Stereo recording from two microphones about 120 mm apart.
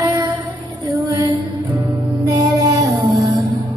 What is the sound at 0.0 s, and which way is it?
Child singing, 30° right (ahead or behind).